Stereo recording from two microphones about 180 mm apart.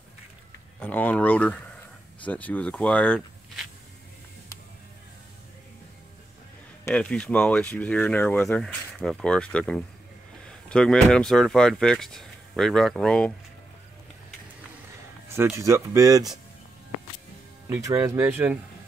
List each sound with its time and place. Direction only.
0.7 s speech: 10° left (ahead or behind)
6.9 s speech: 5° left (ahead or behind)
15.2 s speech: 15° right (ahead or behind)
17.6 s speech: 15° right (ahead or behind)